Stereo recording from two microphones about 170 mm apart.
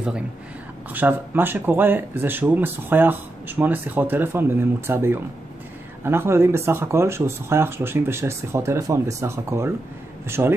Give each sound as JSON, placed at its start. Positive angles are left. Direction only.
{"t": 0.9, "sound": "speech", "side_deg": -10}